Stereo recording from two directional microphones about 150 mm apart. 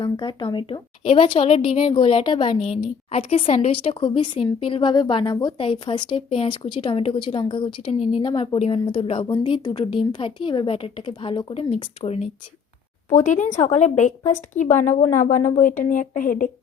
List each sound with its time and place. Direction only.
0.0 s a woman's voice: 30° left (ahead or behind)
8.3 s speech: 25° left (ahead or behind)
8.5 s a woman's voice: 40° left (ahead or behind)
11.7 s speech: 45° left (ahead or behind)
13.1 s speech: 55° left (ahead or behind)
15.4 s speech: 20° left (ahead or behind)
15.6 s speech: 65° left (ahead or behind)